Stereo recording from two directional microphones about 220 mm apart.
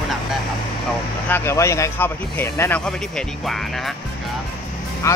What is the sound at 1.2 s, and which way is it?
Speech, 10° left (ahead or behind).